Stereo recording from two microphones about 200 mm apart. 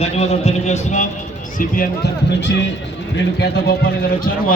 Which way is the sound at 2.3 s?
65° left (ahead or behind).